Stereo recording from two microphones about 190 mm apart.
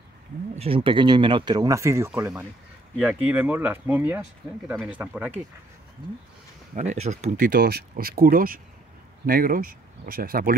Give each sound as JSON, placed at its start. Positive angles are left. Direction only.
{"t": 0.6, "sound": "speech", "side_deg": -30}
{"t": 6.7, "sound": "speech", "side_deg": -35}